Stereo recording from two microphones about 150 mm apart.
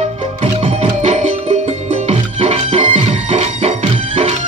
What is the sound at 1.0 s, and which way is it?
Music, 50° right (ahead or behind).